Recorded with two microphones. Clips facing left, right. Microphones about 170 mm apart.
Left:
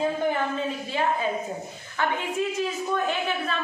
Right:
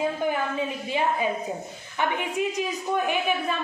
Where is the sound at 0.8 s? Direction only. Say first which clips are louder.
Right 1 dB; 15° right (ahead or behind).